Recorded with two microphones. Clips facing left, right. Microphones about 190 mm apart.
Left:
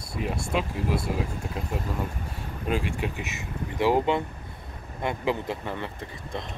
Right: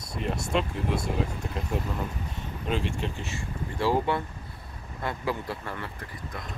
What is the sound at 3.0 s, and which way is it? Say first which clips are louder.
Speech: left 1 dB; 10° left (ahead or behind).